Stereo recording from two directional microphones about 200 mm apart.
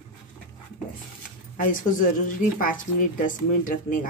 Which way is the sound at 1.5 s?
45° left (ahead or behind).